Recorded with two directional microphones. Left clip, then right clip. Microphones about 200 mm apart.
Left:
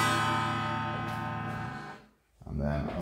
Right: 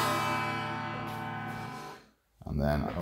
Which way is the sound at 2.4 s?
50° right (ahead or behind).